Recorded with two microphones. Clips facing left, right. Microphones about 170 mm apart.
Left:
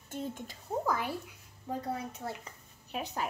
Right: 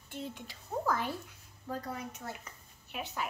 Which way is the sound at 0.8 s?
10° left (ahead or behind).